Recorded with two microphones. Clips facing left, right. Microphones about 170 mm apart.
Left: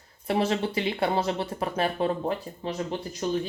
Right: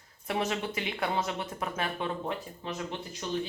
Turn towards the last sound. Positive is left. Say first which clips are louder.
# left 6 dB
turn(degrees=35)  # may be behind; listen again after turning